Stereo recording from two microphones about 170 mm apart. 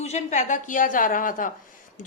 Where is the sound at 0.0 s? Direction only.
40° left (ahead or behind).